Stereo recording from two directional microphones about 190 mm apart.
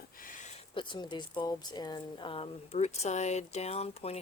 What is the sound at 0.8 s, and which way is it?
Speech, 25° left (ahead or behind).